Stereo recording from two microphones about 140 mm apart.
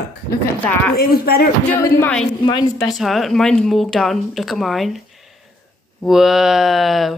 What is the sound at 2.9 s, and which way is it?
Speech, centre (ahead or behind).